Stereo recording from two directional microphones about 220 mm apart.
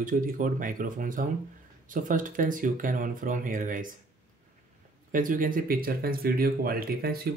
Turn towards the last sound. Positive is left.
turn(degrees=-45)  # may be behind; listen again after turning